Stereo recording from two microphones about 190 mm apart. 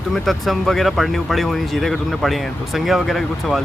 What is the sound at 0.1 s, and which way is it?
Speech, centre (ahead or behind).